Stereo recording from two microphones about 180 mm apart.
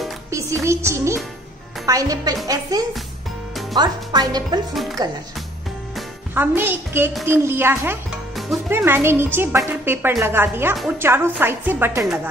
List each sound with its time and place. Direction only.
0.3 s a woman's voice: 15° right (ahead or behind)
6.3 s a woman's voice: 10° right (ahead or behind)